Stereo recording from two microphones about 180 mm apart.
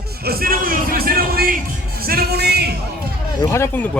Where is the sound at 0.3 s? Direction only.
55° right (ahead or behind).